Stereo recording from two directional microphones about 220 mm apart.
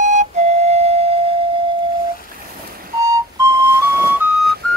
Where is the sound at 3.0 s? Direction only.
15° right (ahead or behind).